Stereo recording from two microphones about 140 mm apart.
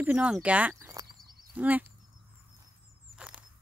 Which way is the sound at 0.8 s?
25° right (ahead or behind).